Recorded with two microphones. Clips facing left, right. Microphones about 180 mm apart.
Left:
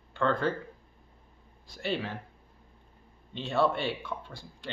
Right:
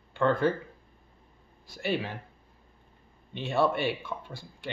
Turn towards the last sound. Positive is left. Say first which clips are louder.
# right 2 dB
turn(degrees=-5)  # may be behind; listen again after turning